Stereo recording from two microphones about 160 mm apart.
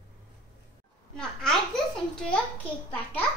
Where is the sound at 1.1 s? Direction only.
5° left (ahead or behind).